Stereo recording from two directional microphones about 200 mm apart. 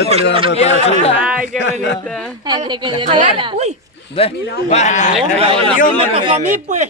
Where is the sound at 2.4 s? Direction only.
25° right (ahead or behind).